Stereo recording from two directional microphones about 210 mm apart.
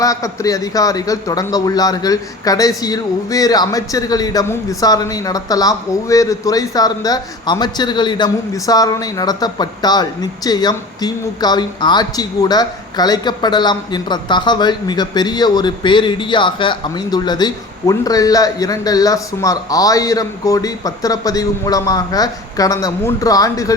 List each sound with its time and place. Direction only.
0.0 s speech: 15° left (ahead or behind)